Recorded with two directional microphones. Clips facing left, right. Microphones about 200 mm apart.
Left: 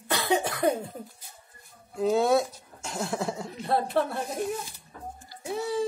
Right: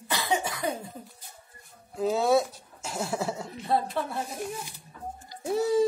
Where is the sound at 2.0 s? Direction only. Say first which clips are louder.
Left 1 dB; centre (ahead or behind).